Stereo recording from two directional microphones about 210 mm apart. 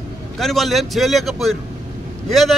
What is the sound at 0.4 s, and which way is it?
A man's voice, centre (ahead or behind).